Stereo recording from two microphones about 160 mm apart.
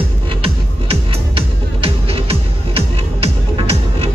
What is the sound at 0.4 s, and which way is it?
Music, 35° right (ahead or behind).